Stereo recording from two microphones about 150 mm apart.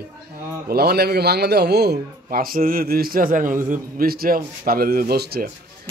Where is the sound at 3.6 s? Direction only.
75° right (ahead or behind).